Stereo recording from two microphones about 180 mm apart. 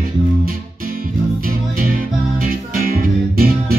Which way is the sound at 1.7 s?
50° right (ahead or behind).